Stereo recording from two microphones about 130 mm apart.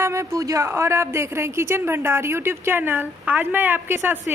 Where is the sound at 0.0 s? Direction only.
20° right (ahead or behind).